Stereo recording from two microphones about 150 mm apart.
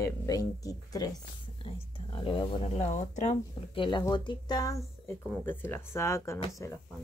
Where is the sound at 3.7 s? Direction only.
30° left (ahead or behind).